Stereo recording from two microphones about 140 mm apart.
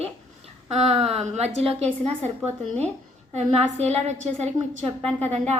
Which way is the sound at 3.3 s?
50° right (ahead or behind).